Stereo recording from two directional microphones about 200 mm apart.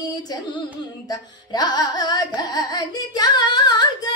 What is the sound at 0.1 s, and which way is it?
Music, 20° left (ahead or behind).